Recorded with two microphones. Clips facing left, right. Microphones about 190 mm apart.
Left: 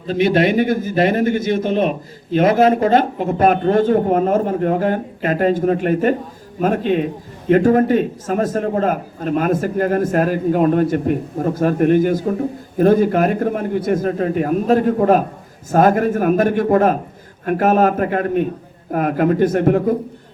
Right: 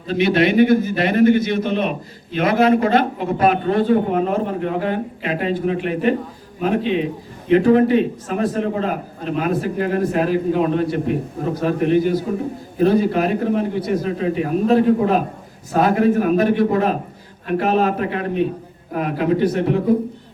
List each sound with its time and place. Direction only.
0.1 s a man's voice: 45° left (ahead or behind)